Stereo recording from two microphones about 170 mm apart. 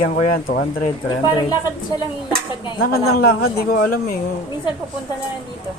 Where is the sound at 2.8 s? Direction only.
65° left (ahead or behind).